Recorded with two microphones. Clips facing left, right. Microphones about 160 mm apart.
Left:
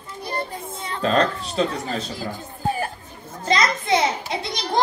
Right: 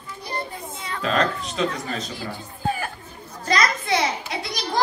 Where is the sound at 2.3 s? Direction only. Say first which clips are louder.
Left 1 dB; 35° left (ahead or behind).